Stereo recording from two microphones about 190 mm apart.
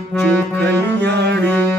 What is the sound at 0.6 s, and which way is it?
Music, 60° right (ahead or behind).